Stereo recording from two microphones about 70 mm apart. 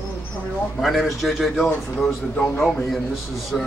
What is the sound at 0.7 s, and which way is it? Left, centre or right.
Speech, centre.